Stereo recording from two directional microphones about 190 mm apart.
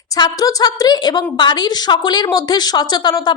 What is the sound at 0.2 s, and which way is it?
A woman's voice, 20° left (ahead or behind).